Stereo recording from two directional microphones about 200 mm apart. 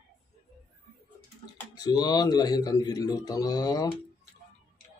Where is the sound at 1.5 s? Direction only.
20° left (ahead or behind).